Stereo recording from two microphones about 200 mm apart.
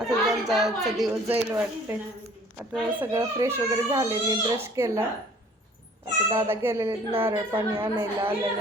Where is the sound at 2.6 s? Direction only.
10° right (ahead or behind).